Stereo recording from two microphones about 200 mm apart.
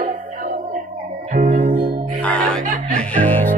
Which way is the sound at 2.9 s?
10° left (ahead or behind).